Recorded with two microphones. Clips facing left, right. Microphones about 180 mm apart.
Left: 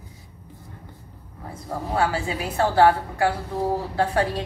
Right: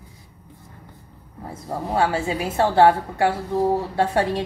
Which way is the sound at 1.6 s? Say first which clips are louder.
Right 2 dB; 25° right (ahead or behind).